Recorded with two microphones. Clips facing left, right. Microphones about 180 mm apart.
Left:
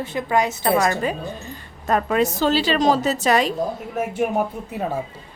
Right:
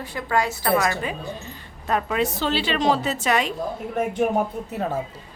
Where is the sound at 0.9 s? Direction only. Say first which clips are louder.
Left 4 dB; 45° left (ahead or behind).